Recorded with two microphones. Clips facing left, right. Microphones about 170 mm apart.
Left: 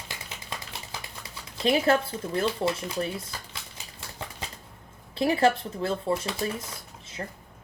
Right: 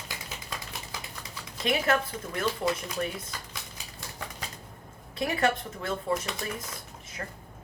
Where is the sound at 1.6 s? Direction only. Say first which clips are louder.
Left 4 dB; 30° left (ahead or behind).